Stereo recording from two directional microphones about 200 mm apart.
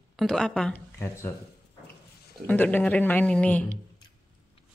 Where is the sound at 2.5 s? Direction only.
10° left (ahead or behind).